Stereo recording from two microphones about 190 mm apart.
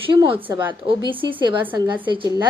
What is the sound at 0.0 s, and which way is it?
A woman's voice, 25° right (ahead or behind).